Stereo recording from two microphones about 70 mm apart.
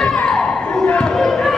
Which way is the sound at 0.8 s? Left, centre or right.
Centre.